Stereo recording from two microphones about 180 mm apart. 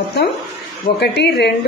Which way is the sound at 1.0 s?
70° left (ahead or behind).